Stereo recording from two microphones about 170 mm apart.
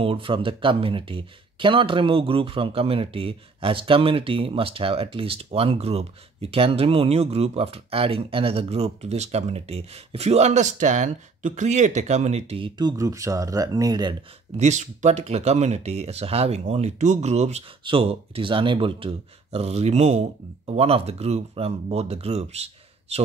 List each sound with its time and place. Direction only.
0.0 s speech: 30° right (ahead or behind)
14.6 s speech: 45° right (ahead or behind)